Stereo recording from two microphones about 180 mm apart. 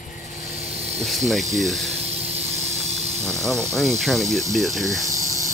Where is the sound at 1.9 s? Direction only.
35° right (ahead or behind).